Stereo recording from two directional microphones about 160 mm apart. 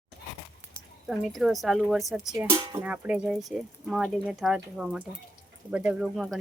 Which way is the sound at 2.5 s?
30° right (ahead or behind).